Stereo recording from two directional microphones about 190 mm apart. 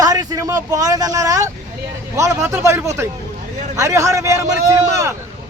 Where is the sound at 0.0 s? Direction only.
20° right (ahead or behind).